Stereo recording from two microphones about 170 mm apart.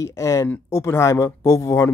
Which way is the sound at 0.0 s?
20° left (ahead or behind).